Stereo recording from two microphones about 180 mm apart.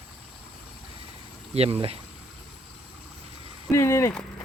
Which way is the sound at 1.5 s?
35° right (ahead or behind).